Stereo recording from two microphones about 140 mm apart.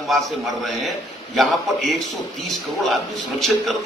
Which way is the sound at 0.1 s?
Centre (ahead or behind).